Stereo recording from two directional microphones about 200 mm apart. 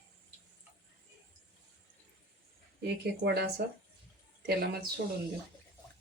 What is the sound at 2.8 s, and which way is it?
Speech, 55° right (ahead or behind).